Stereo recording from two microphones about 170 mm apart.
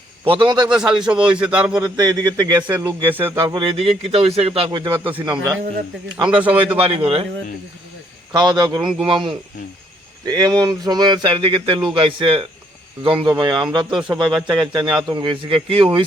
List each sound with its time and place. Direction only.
0.3 s a man's voice: 30° right (ahead or behind)
0.8 s a man's voice: 5° right (ahead or behind)
1.8 s a man's voice: 25° right (ahead or behind)
3.1 s a man's voice: 10° right (ahead or behind)
3.6 s a man's voice: 30° right (ahead or behind)
6.2 s a man's voice: 10° right (ahead or behind)
6.7 s a man's voice: 35° right (ahead or behind)
8.3 s a man's voice: 25° right (ahead or behind)
8.8 s a man's voice: 5° right (ahead or behind)
9.0 s a man's voice: 30° right (ahead or behind)